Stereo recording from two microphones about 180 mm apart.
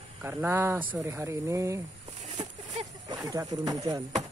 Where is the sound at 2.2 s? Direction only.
40° right (ahead or behind).